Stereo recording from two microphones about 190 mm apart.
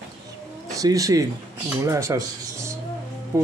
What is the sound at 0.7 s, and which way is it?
Speech, 20° right (ahead or behind).